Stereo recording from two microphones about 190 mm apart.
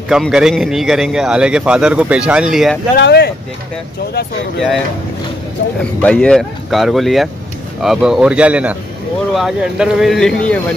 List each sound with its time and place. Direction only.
0.1 s a man's voice: centre (ahead or behind)
3.0 s speech: 60° left (ahead or behind)
5.8 s a man's voice: 5° left (ahead or behind)